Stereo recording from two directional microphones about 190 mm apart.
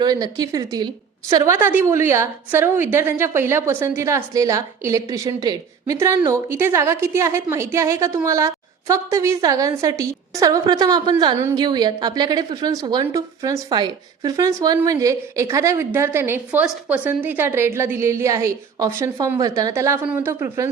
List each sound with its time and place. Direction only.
0.0 s a woman's voice: 20° right (ahead or behind)